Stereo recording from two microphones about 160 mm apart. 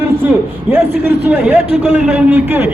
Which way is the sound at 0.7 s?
10° right (ahead or behind).